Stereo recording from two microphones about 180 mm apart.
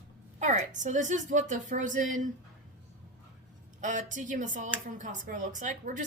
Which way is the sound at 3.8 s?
45° right (ahead or behind).